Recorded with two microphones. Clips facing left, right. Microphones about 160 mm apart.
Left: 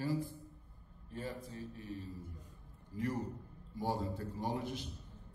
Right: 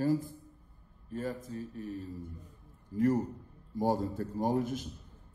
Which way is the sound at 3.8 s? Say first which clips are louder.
Right 7 dB; 45° right (ahead or behind).